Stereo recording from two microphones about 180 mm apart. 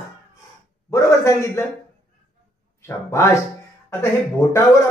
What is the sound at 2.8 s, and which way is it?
Speech, 15° left (ahead or behind).